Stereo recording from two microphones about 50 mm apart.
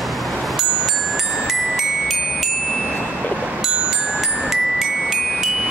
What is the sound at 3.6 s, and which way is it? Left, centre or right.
Music, centre.